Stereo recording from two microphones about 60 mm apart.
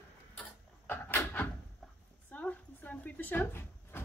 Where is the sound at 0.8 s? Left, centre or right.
Left.